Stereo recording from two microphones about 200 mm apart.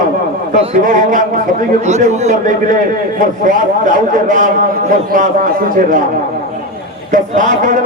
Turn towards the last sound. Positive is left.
turn(degrees=-40)  # may be behind; listen again after turning